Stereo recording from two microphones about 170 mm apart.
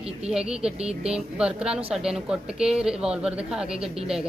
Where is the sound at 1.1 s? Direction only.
5° right (ahead or behind).